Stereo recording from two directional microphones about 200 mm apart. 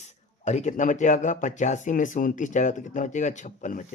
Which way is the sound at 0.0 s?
35° left (ahead or behind).